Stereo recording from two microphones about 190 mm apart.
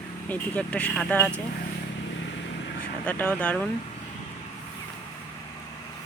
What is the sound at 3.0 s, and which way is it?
Speech, 10° left (ahead or behind).